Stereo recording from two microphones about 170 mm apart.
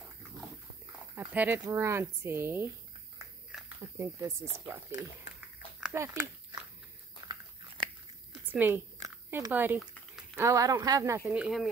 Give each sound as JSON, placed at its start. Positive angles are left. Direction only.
{"t": 1.3, "sound": "speech", "side_deg": -10}
{"t": 3.8, "sound": "speech", "side_deg": -15}
{"t": 5.4, "sound": "a sound", "side_deg": -5}
{"t": 7.2, "sound": "biting", "side_deg": -25}
{"t": 8.5, "sound": "a woman's voice", "side_deg": -10}
{"t": 11.3, "sound": "speech", "side_deg": -5}